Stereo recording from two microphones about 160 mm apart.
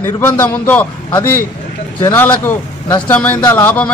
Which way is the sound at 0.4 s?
10° left (ahead or behind).